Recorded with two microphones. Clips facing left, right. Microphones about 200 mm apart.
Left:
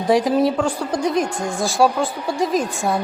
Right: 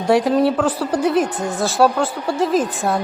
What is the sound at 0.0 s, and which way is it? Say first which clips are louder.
A woman's voice: right 1 dB; centre (ahead or behind).